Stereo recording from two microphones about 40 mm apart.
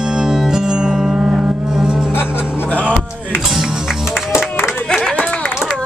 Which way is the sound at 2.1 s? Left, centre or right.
Left.